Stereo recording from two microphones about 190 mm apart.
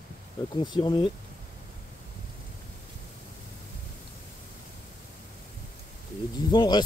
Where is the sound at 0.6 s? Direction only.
20° left (ahead or behind).